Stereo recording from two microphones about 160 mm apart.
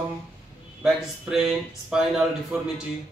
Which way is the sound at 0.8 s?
Centre (ahead or behind).